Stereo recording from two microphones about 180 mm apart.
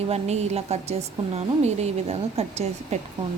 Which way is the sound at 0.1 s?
35° right (ahead or behind).